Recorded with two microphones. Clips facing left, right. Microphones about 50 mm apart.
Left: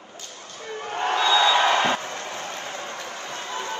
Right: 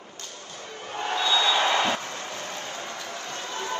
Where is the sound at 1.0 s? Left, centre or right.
Left.